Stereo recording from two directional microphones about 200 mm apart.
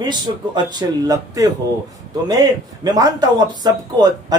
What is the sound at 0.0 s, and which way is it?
A man's voice, 20° right (ahead or behind).